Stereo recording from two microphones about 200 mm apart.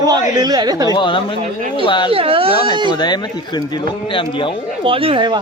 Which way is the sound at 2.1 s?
30° right (ahead or behind).